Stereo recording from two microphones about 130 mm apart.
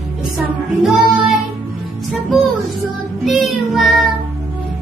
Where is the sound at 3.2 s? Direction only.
Centre (ahead or behind).